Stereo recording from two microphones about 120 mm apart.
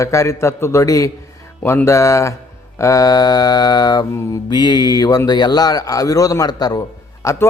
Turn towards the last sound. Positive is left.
turn(degrees=25)  # may be behind; listen again after turning